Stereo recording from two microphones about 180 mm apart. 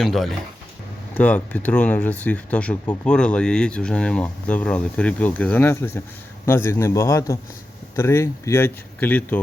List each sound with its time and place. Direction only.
0.0 s speech: centre (ahead or behind)